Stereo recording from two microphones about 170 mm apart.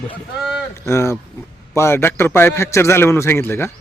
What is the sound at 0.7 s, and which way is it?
A man's voice, 15° left (ahead or behind).